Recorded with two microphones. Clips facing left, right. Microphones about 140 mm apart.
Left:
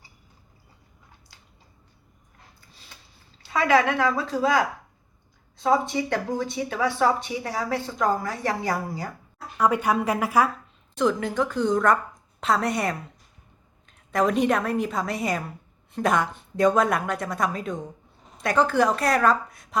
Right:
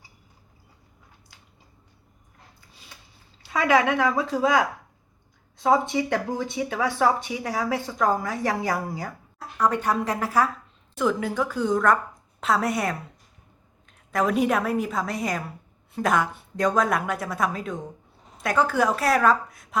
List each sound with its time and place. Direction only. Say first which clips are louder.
3.7 s speech: even; 15° right (ahead or behind)
5.6 s speech: right 1 dB; 15° right (ahead or behind)
9.6 s speech: left 1 dB; 10° left (ahead or behind)
10.9 s a woman's voice: left 1 dB; 5° right (ahead or behind)